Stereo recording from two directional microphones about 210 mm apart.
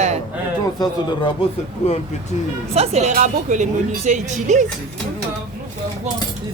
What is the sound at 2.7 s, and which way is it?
Speech, 30° right (ahead or behind).